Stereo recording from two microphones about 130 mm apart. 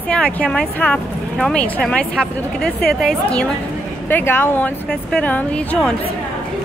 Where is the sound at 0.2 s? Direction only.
5° left (ahead or behind).